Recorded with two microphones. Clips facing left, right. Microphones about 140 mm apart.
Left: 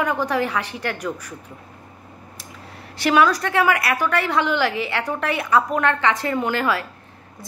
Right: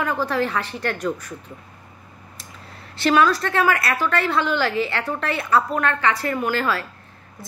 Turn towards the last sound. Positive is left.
turn(degrees=15)  # may be behind; listen again after turning